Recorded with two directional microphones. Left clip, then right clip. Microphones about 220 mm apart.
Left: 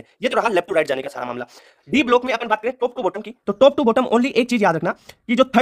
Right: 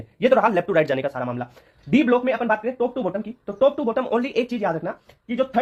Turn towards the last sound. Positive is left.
turn(degrees=40)  # may be behind; listen again after turning